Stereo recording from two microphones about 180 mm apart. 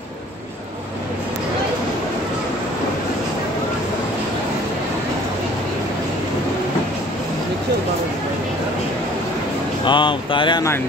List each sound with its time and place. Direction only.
9.8 s speech: 25° left (ahead or behind)